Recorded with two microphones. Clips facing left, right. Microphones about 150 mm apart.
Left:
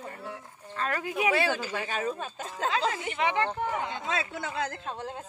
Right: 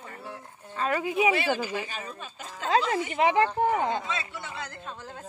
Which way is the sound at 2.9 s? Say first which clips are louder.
Right 5 dB; 35° right (ahead or behind).